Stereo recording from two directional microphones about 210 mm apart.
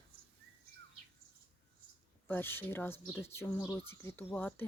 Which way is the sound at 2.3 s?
10° left (ahead or behind).